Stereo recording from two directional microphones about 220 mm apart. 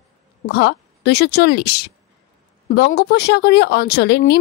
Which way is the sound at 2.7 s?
50° left (ahead or behind).